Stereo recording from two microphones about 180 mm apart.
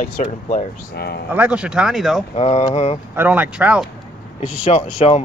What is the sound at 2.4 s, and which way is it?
Speech, 35° left (ahead or behind).